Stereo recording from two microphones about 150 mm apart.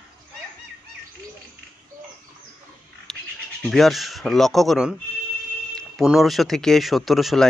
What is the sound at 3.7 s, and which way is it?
Speech, centre (ahead or behind).